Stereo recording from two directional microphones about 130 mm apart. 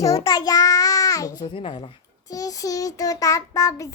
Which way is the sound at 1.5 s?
40° left (ahead or behind).